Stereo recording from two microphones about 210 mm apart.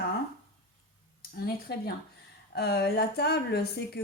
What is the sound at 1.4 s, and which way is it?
A woman's voice, 50° left (ahead or behind).